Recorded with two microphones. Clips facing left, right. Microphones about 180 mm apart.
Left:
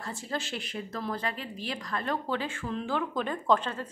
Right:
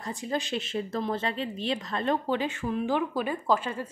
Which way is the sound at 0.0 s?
15° right (ahead or behind).